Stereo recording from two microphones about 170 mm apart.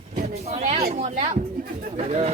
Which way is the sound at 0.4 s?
40° right (ahead or behind).